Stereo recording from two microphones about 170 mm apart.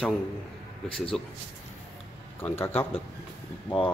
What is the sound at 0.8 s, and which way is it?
Speech, 30° left (ahead or behind).